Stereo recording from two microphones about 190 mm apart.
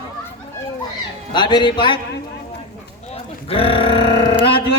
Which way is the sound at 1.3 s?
25° left (ahead or behind).